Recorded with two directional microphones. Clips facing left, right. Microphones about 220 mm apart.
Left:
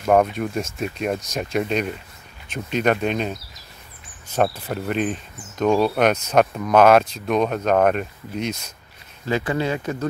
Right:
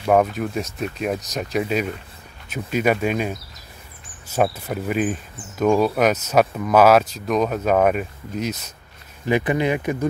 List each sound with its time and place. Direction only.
0.0 s speech: centre (ahead or behind)
9.2 s speech: 15° right (ahead or behind)